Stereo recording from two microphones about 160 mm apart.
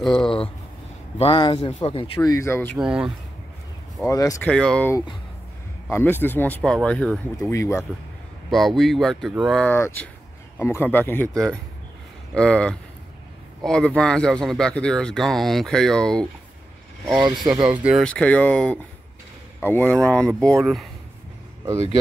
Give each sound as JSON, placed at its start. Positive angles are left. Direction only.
{"t": 0.0, "sound": "speech", "side_deg": 5}
{"t": 1.1, "sound": "speech", "side_deg": 35}
{"t": 2.2, "sound": "speech", "side_deg": 20}
{"t": 2.7, "sound": "speech", "side_deg": -5}
{"t": 4.0, "sound": "speech", "side_deg": 20}
{"t": 4.5, "sound": "speech", "side_deg": 5}
{"t": 7.3, "sound": "speech", "side_deg": 15}
{"t": 8.5, "sound": "speech", "side_deg": 0}
{"t": 9.7, "sound": "speech", "side_deg": 15}
{"t": 18.0, "sound": "speech", "side_deg": 5}